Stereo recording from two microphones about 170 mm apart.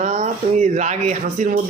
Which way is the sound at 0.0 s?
45° right (ahead or behind).